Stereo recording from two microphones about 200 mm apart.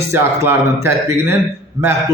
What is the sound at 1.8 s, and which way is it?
Speech, 15° right (ahead or behind).